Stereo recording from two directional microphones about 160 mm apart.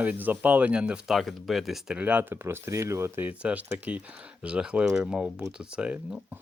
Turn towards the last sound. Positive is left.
turn(degrees=-5)  # may be behind; listen again after turning